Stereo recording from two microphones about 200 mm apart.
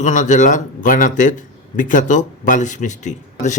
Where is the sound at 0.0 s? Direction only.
40° left (ahead or behind).